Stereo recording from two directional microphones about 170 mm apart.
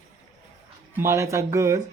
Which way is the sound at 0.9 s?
15° right (ahead or behind).